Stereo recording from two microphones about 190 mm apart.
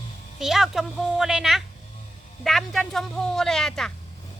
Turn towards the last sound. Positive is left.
turn(degrees=5)  # may be behind; listen again after turning